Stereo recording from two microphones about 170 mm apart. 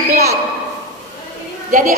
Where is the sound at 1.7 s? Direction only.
55° right (ahead or behind).